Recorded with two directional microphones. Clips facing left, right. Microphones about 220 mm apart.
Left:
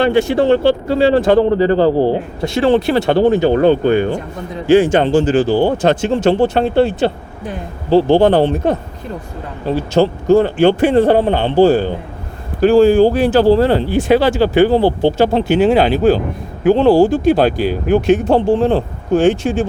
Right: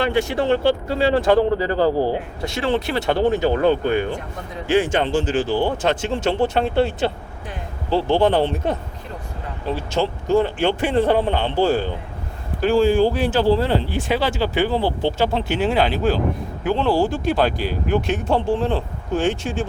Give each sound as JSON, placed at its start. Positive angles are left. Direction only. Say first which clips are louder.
{"t": 0.0, "sound": "speech", "louder": "left 7 dB", "side_deg": 30}
{"t": 17.6, "sound": "speech", "louder": "left 8 dB", "side_deg": 10}
{"t": 17.9, "sound": "speech", "louder": "left 8 dB", "side_deg": 45}
{"t": 18.7, "sound": "speech", "louder": "left 8 dB", "side_deg": 65}